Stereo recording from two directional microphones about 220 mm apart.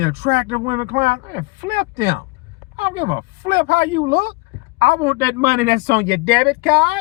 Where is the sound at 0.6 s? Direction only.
30° right (ahead or behind).